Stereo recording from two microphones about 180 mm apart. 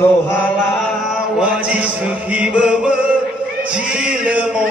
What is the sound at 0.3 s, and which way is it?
Chant, 10° left (ahead or behind).